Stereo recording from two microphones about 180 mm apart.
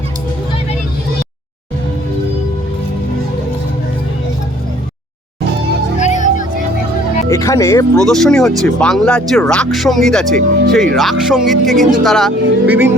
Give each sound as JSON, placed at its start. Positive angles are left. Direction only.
{"t": 6.0, "sound": "music", "side_deg": 40}
{"t": 7.3, "sound": "speech", "side_deg": 15}
{"t": 7.9, "sound": "speech", "side_deg": 0}
{"t": 12.6, "sound": "music", "side_deg": -10}